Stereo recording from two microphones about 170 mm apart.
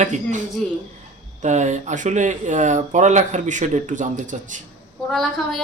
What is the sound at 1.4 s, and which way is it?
Speech, 45° right (ahead or behind).